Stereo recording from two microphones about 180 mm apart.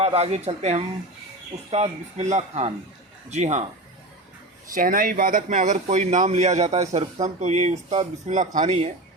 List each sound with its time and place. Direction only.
0.0 s speech: 35° right (ahead or behind)
4.7 s speech: 50° right (ahead or behind)